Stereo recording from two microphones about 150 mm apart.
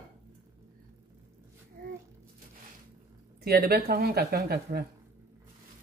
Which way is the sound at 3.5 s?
90° right.